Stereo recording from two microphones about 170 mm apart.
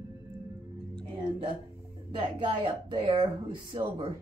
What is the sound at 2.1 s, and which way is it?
Speech, 30° right (ahead or behind).